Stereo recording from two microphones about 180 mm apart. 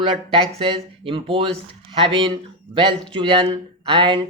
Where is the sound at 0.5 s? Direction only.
30° right (ahead or behind).